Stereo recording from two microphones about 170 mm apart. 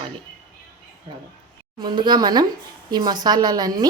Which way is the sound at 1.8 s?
25° right (ahead or behind).